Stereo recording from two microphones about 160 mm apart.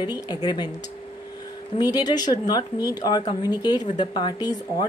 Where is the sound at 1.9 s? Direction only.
25° left (ahead or behind).